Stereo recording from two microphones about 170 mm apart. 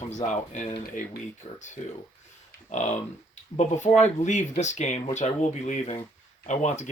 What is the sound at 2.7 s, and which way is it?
Speech, 45° left (ahead or behind).